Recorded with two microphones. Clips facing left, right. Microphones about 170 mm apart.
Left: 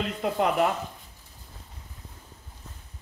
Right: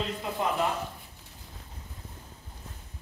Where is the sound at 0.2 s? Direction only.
65° left (ahead or behind).